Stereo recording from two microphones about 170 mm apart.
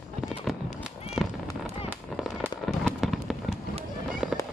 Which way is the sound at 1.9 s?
Centre (ahead or behind).